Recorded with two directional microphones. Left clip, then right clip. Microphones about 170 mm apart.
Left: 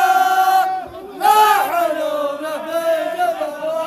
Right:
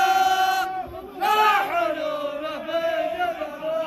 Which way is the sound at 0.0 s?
45° left (ahead or behind).